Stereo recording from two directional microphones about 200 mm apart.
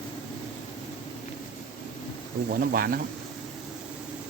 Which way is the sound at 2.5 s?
50° right (ahead or behind).